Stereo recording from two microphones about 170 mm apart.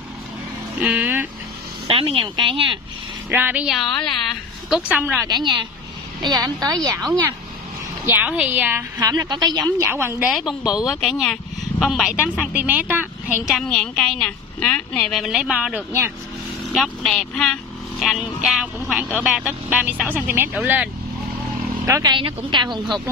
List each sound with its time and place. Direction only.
0.7 s a woman's voice: 10° right (ahead or behind)
1.9 s a woman's voice: 35° right (ahead or behind)
3.3 s a woman's voice: 10° right (ahead or behind)
5.3 s a woman's voice: 25° right (ahead or behind)
8.0 s a woman's voice: 10° right (ahead or behind)
13.6 s speech: 5° left (ahead or behind); by 16.1 s 10° right (ahead or behind)
16.7 s a woman's voice: centre (ahead or behind)
21.8 s a woman's voice: 20° right (ahead or behind)